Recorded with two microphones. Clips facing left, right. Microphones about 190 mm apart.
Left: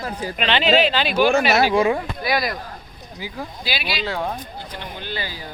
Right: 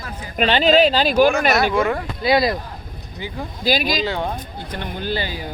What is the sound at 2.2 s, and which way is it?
Speech, 25° right (ahead or behind).